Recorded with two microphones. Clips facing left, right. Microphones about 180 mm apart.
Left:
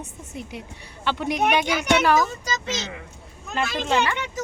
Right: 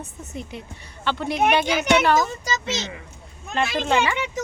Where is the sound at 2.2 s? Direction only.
10° right (ahead or behind).